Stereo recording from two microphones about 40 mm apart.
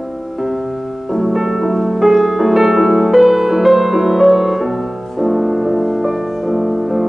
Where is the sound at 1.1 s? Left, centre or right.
Centre.